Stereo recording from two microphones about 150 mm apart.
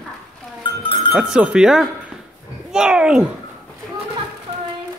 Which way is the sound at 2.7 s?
5° right (ahead or behind).